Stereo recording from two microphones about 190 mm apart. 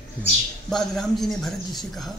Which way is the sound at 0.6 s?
Centre (ahead or behind).